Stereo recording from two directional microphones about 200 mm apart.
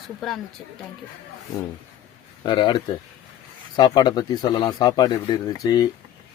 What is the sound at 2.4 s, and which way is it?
Speech, 20° left (ahead or behind).